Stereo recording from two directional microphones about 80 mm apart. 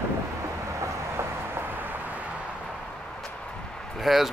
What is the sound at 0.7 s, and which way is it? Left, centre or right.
Vehicle, right.